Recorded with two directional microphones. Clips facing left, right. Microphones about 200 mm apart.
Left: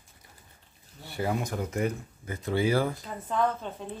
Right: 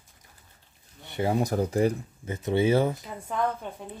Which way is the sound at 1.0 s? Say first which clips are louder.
Right 4 dB; 20° right (ahead or behind).